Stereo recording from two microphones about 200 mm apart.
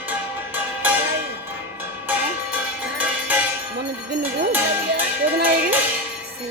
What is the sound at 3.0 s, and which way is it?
Music, 5° right (ahead or behind).